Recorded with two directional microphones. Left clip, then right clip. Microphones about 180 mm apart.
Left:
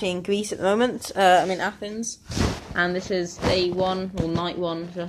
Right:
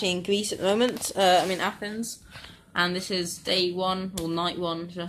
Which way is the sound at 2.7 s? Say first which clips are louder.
Left 1 dB; 10° right (ahead or behind).